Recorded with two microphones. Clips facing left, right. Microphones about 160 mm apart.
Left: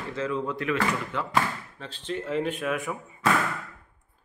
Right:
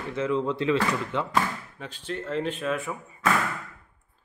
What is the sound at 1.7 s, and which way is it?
Speech, 10° right (ahead or behind).